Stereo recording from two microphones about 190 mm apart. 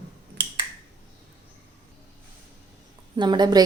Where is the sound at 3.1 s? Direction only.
25° right (ahead or behind).